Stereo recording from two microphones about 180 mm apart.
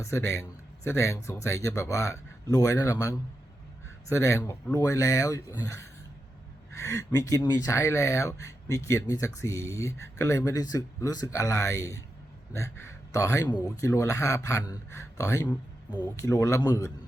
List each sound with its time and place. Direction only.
0.0 s speech: 15° left (ahead or behind)